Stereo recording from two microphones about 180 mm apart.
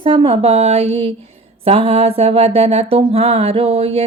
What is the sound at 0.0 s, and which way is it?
Mantra, 30° right (ahead or behind).